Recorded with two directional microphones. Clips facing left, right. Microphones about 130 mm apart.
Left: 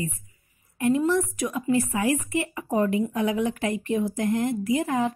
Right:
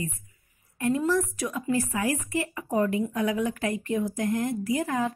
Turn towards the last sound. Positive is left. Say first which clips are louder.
# left 3 dB
turn(degrees=20)  # may be behind; listen again after turning